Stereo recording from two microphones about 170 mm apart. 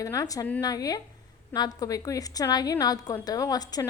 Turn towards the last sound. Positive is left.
turn(degrees=20)  # may be behind; listen again after turning